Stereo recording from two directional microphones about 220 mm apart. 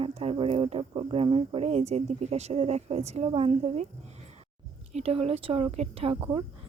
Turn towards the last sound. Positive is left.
turn(degrees=-25)  # may be behind; listen again after turning